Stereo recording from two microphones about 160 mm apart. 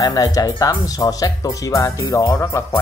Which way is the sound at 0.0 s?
25° left (ahead or behind).